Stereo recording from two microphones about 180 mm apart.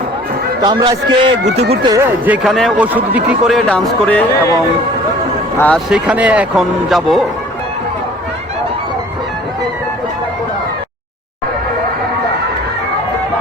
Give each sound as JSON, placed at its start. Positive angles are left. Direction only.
{"t": 0.6, "sound": "a man's voice", "side_deg": -25}
{"t": 2.0, "sound": "a man's voice", "side_deg": -10}
{"t": 5.5, "sound": "speech", "side_deg": 10}
{"t": 5.9, "sound": "a man's voice", "side_deg": -5}